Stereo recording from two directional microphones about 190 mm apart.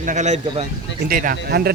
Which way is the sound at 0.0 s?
40° right (ahead or behind).